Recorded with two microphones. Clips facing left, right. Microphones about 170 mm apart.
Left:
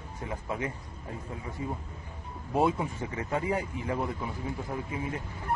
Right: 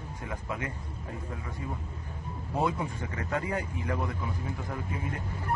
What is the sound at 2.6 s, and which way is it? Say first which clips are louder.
Speech: left 3 dB; 25° left (ahead or behind).